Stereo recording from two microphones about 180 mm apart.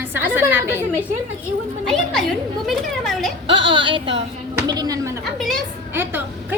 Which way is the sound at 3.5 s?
30° right (ahead or behind).